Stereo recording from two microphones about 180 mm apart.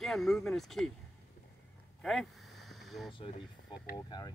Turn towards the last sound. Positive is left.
turn(degrees=25)  # may be behind; listen again after turning